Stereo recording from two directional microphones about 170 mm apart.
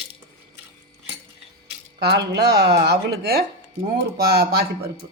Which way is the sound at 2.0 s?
85° right.